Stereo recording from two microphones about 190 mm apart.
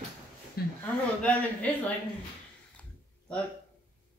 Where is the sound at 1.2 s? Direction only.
5° left (ahead or behind).